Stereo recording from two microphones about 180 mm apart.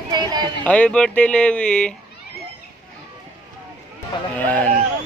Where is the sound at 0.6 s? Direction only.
5° left (ahead or behind).